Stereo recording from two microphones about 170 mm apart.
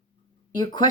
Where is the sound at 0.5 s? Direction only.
25° left (ahead or behind).